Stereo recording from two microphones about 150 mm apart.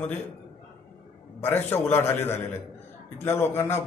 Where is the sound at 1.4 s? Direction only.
15° left (ahead or behind).